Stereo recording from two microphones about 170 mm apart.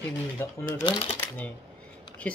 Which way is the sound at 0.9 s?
30° left (ahead or behind).